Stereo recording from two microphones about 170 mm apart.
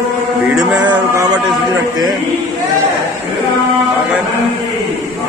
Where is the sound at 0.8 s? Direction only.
25° right (ahead or behind).